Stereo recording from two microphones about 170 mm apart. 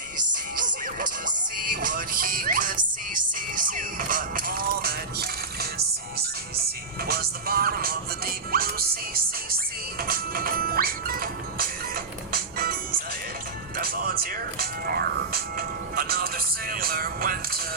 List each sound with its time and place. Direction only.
0.5 s music: 50° right (ahead or behind)
7.1 s music: 65° right (ahead or behind)